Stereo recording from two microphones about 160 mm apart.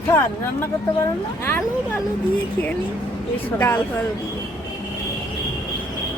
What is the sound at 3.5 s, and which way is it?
Speech, 15° left (ahead or behind).